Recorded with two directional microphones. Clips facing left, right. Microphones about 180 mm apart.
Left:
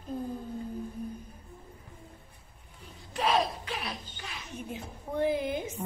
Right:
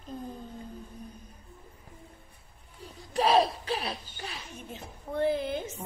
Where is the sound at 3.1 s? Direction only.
35° right (ahead or behind).